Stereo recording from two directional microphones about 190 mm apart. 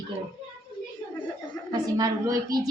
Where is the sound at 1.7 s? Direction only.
20° right (ahead or behind).